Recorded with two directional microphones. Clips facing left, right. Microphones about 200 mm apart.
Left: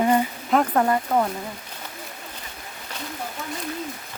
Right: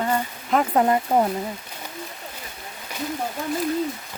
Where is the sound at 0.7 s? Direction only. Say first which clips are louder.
Right 2 dB; 20° right (ahead or behind).